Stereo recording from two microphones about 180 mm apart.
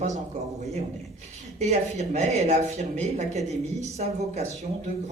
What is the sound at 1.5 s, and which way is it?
Speech, 40° right (ahead or behind).